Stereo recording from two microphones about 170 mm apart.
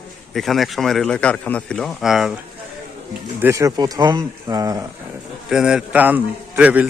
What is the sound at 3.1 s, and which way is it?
Speech, 15° right (ahead or behind).